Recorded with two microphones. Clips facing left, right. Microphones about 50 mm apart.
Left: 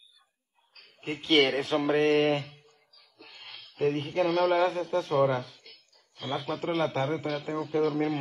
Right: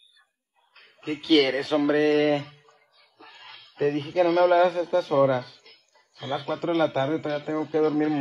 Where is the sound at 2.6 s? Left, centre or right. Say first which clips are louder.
Right 3 dB; right.